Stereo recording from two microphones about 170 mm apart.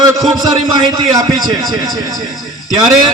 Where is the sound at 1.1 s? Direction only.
20° right (ahead or behind).